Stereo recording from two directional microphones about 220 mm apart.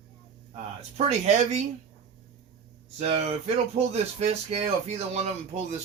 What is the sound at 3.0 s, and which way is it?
Speech, 30° right (ahead or behind).